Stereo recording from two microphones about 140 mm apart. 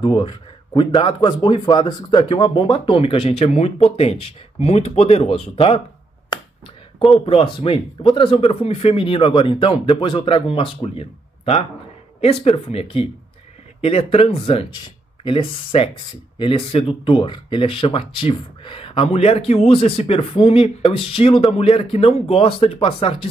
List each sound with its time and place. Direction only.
0.0 s a man's voice: 35° left (ahead or behind)
7.2 s speech: 40° left (ahead or behind)